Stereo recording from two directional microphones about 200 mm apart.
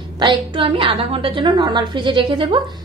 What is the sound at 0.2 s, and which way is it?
A woman's voice, 25° right (ahead or behind).